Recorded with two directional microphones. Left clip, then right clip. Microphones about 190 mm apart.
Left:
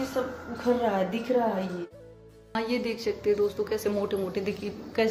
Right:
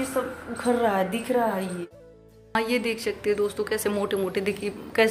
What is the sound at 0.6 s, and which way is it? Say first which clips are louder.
A woman's voice: right 3 dB; 15° right (ahead or behind).